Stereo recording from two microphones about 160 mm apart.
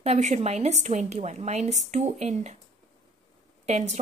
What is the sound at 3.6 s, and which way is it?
Speech, 45° right (ahead or behind).